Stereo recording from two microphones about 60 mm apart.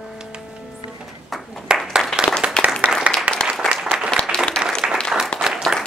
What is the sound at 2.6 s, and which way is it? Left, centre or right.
Applause, centre.